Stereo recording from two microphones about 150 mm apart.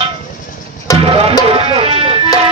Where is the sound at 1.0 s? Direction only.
40° right (ahead or behind).